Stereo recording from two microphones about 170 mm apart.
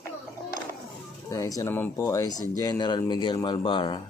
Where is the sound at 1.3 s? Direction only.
20° left (ahead or behind).